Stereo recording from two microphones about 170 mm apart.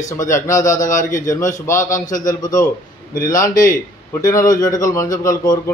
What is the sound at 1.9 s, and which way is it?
Speech, 50° left (ahead or behind).